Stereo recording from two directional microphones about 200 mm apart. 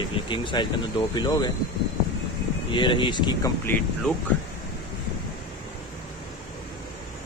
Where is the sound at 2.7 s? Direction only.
25° left (ahead or behind).